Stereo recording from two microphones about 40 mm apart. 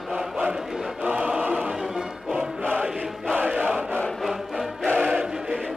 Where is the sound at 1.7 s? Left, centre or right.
Centre.